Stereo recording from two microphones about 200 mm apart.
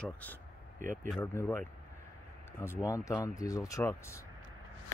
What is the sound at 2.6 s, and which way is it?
Speech, 15° left (ahead or behind).